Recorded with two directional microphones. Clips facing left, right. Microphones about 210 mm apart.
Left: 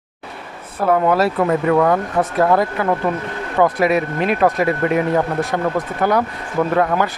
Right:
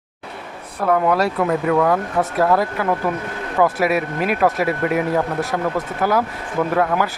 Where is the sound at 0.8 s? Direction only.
5° left (ahead or behind).